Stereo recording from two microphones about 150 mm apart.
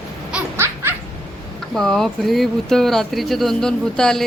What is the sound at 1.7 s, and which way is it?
Speech, 5° left (ahead or behind).